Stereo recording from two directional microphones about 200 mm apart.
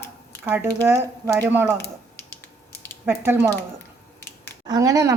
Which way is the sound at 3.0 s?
10° right (ahead or behind).